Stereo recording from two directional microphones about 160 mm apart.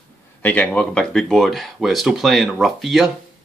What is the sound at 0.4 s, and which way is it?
Speech, 10° left (ahead or behind).